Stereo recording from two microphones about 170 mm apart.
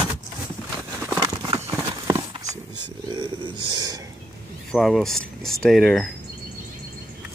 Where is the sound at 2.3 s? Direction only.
20° right (ahead or behind).